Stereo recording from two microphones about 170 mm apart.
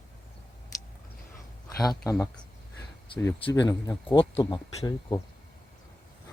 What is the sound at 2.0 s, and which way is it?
Speech, 20° left (ahead or behind).